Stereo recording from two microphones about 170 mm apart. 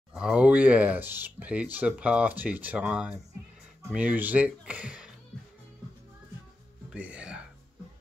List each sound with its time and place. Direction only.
0.1 s speech: 5° right (ahead or behind)
6.9 s music: 5° right (ahead or behind)